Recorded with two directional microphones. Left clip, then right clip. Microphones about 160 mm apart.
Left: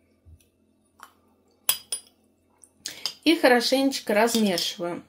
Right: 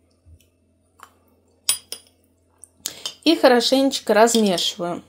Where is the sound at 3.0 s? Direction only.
25° right (ahead or behind).